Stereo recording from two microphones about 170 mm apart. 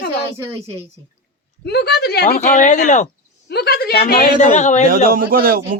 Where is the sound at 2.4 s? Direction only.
45° left (ahead or behind).